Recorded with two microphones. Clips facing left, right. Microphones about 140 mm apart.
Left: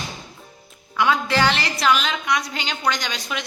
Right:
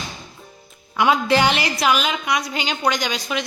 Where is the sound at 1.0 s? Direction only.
15° right (ahead or behind).